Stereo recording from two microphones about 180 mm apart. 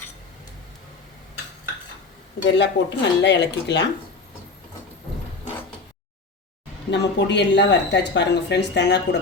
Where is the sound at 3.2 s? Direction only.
75° left (ahead or behind).